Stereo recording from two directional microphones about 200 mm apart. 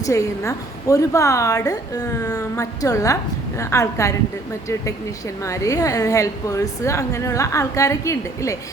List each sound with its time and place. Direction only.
0.0 s a woman's voice: 15° left (ahead or behind)
5.4 s a woman's voice: 15° left (ahead or behind)